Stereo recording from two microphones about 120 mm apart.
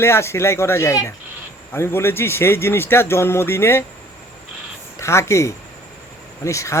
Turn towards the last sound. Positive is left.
turn(degrees=25)  # may be behind; listen again after turning